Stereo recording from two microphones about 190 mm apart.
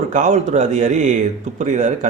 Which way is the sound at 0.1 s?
40° right (ahead or behind).